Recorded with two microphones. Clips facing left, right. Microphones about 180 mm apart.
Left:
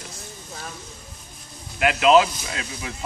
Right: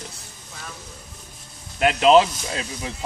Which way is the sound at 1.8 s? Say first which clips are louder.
Right 1 dB; 30° right (ahead or behind).